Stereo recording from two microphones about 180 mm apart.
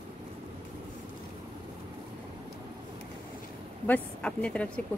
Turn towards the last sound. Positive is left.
turn(degrees=10)  # may be behind; listen again after turning